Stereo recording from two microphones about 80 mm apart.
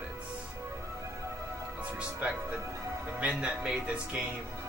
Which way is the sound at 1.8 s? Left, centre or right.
Centre.